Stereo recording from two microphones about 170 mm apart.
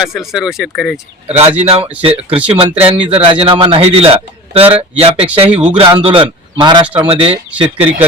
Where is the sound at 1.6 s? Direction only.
35° right (ahead or behind).